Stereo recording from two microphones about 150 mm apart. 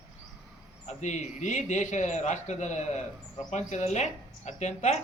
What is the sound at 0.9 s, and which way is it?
A man's voice, 50° left (ahead or behind).